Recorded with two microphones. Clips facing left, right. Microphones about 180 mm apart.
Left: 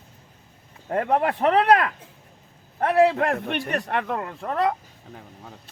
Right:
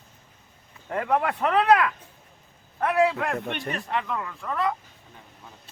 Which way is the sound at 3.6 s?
65° left (ahead or behind).